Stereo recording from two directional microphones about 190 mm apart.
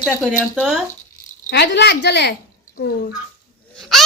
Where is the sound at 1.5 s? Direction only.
60° left (ahead or behind).